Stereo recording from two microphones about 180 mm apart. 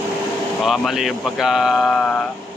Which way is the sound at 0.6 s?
Centre (ahead or behind).